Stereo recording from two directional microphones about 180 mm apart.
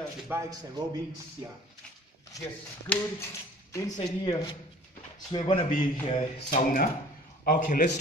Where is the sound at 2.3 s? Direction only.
15° left (ahead or behind).